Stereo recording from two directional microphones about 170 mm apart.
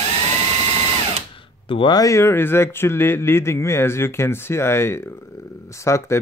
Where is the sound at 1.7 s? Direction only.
25° left (ahead or behind).